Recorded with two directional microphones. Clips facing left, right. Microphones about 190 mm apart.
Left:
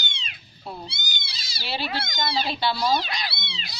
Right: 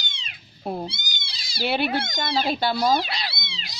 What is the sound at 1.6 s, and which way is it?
Speech, 55° right (ahead or behind).